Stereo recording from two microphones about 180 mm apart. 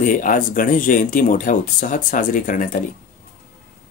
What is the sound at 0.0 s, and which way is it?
Speech, 50° left (ahead or behind).